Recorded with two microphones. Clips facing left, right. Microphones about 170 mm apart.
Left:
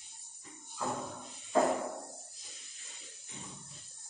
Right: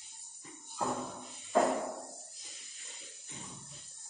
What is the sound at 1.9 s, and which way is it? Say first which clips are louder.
Spray: even; centre (ahead or behind).